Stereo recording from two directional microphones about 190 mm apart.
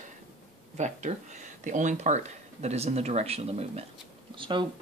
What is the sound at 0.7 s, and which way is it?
Speech, 40° right (ahead or behind).